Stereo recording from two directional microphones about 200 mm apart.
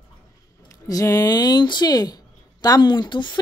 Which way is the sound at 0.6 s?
15° left (ahead or behind).